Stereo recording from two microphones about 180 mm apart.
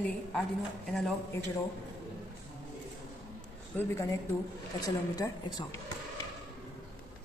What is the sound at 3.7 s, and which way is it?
A woman's voice, 15° left (ahead or behind).